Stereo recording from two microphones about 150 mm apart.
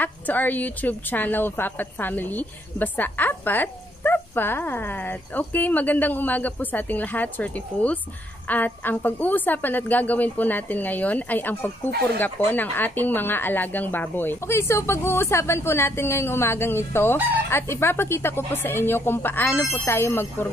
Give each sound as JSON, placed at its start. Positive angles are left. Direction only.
{"t": 0.0, "sound": "a woman's voice", "side_deg": 10}